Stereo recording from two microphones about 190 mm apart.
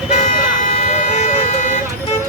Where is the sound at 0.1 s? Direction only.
40° left (ahead or behind).